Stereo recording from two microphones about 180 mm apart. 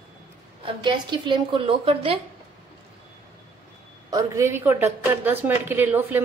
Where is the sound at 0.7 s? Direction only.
25° right (ahead or behind).